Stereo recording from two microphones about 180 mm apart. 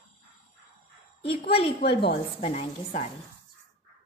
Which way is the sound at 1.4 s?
30° left (ahead or behind).